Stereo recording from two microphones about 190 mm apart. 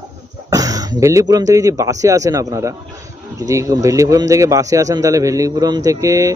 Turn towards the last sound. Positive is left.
turn(degrees=-15)  # may be behind; listen again after turning